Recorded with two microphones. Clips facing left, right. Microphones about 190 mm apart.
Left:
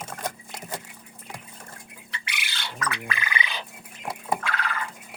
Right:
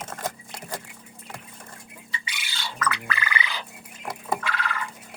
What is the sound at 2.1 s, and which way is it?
Squawk, 65° left (ahead or behind).